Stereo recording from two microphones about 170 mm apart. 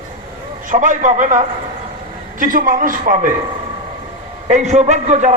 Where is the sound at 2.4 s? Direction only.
55° right (ahead or behind).